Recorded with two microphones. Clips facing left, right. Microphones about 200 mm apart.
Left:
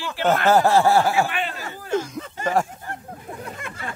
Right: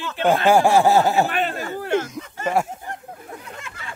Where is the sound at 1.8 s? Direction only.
70° right (ahead or behind).